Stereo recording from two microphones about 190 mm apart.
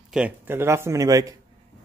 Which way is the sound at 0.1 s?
10° right (ahead or behind).